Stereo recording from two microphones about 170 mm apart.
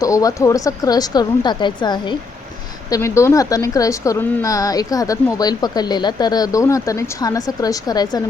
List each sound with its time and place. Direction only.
0.0 s a woman's voice: 20° left (ahead or behind)